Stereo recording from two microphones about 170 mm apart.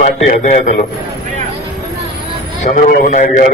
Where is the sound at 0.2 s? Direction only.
45° left (ahead or behind).